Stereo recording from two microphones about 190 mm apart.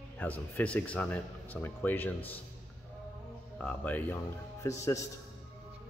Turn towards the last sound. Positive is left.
turn(degrees=15)  # may be behind; listen again after turning